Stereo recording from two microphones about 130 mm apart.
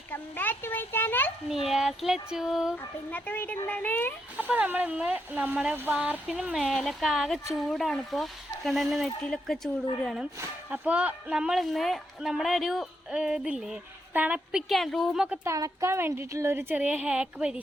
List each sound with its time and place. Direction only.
0.1 s a sound: 15° left (ahead or behind)
1.5 s speech: 5° right (ahead or behind)
2.7 s a child's voice: 10° left (ahead or behind)
4.4 s speech: 15° right (ahead or behind)
10.7 s speech: 10° right (ahead or behind)
15.4 s speech: 25° right (ahead or behind); by 17.6 s 10° right (ahead or behind)